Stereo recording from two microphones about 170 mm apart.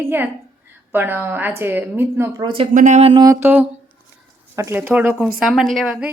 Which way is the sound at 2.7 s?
45° right (ahead or behind).